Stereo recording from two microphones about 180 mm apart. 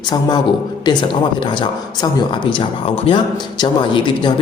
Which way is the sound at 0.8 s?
25° left (ahead or behind).